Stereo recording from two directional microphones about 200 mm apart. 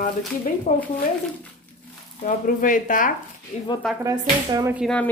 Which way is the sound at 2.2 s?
40° left (ahead or behind).